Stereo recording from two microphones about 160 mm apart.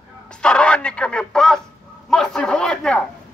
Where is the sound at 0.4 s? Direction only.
5° left (ahead or behind).